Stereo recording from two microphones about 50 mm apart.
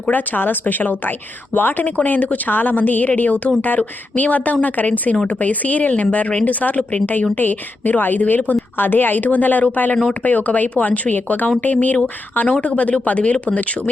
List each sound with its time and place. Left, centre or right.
0.1 s a woman's voice: left